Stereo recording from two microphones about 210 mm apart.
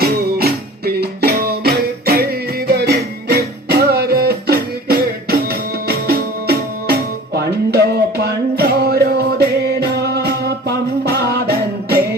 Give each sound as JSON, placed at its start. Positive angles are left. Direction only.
{"t": 0.0, "sound": "music", "side_deg": -45}